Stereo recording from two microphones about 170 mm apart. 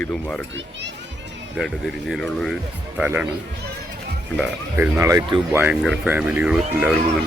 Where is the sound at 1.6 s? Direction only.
Centre (ahead or behind).